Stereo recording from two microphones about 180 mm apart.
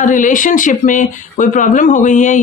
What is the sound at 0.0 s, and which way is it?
Speech, 45° left (ahead or behind).